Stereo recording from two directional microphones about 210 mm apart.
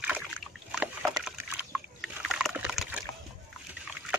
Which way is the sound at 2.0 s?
Centre (ahead or behind).